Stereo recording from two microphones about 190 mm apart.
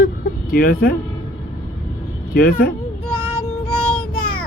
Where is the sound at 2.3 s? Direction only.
50° left (ahead or behind).